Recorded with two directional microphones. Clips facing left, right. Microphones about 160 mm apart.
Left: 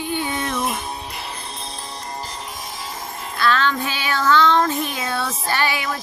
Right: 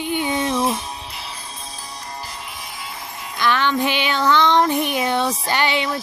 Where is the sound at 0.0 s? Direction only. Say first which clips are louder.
Right 3 dB; 15° right (ahead or behind).